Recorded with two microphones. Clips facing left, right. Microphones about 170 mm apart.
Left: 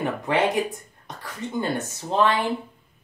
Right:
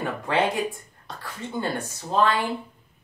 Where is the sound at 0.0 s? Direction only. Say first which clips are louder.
Left 2 dB; 20° left (ahead or behind).